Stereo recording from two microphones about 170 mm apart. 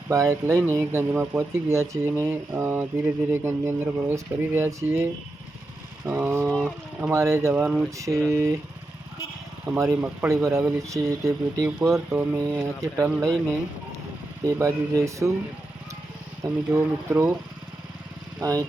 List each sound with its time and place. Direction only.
0.1 s speech: 15° right (ahead or behind)
6.1 s speech: 10° right (ahead or behind)
6.5 s speech: 5° left (ahead or behind)
7.1 s speech: 15° right (ahead or behind)
9.7 s speech: 15° right (ahead or behind)
11.6 s speech: 5° right (ahead or behind)
14.4 s speech: 20° right (ahead or behind)
16.4 s speech: 15° right (ahead or behind)
18.3 s speech: 20° right (ahead or behind)